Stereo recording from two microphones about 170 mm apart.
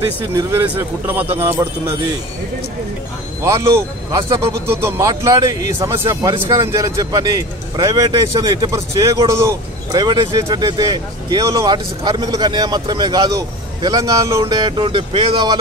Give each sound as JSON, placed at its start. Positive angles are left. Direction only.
{"t": 0.4, "sound": "a man's voice", "side_deg": -15}
{"t": 3.4, "sound": "a man's voice", "side_deg": -15}